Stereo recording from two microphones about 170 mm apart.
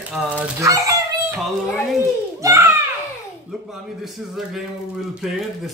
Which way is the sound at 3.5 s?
Centre (ahead or behind).